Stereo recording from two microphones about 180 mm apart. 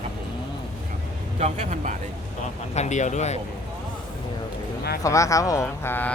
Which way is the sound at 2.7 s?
40° left (ahead or behind).